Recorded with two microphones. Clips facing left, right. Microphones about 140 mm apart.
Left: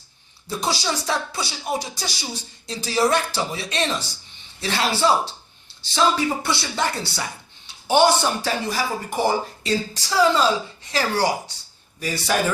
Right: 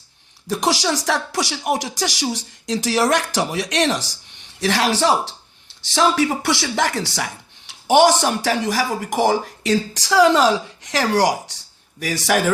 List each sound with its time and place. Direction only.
0.4 s speech: 90° right